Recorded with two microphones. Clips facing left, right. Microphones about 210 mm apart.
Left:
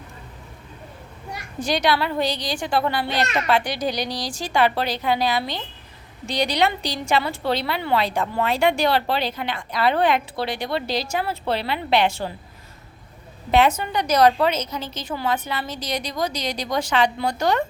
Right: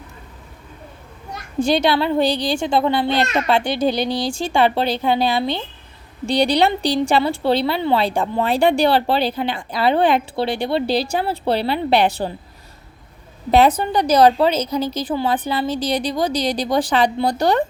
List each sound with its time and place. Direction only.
1.5 s a child's voice: 25° right (ahead or behind)
13.5 s a woman's voice: 35° right (ahead or behind)